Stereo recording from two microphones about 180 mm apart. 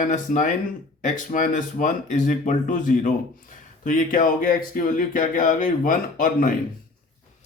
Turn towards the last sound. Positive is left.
turn(degrees=50)  # may be behind; listen again after turning